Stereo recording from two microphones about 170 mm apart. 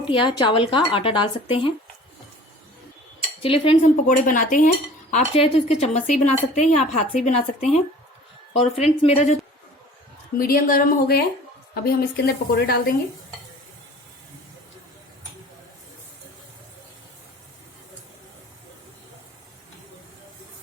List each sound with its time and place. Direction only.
0.0 s speech: 30° left (ahead or behind)
3.4 s a woman's voice: 30° left (ahead or behind)
4.1 s speech: 50° left (ahead or behind)
5.1 s a woman's voice: 35° left (ahead or behind)
10.3 s a woman's voice: 60° left (ahead or behind)